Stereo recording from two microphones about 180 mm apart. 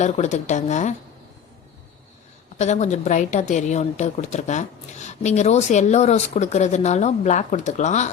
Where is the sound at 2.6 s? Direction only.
40° left (ahead or behind).